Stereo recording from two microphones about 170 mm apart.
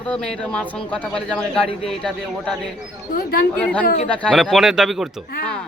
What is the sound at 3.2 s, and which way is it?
Speech, 60° left (ahead or behind).